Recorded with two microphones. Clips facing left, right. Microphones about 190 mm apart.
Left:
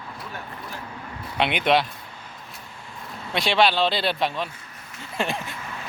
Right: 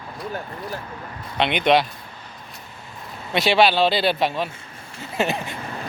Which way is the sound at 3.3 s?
5° right (ahead or behind).